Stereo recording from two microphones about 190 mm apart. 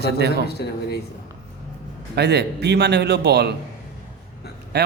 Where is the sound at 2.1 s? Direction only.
60° right (ahead or behind).